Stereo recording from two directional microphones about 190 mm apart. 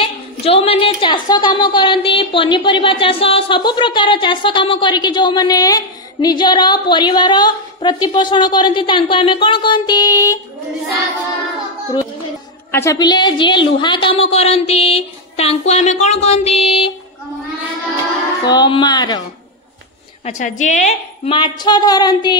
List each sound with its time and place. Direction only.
0.0 s a woman's voice: 30° left (ahead or behind)
12.7 s a woman's voice: 15° left (ahead or behind)
18.4 s a woman's voice: 20° left (ahead or behind)
20.2 s a woman's voice: 40° left (ahead or behind)
21.4 s a woman's voice: 20° left (ahead or behind)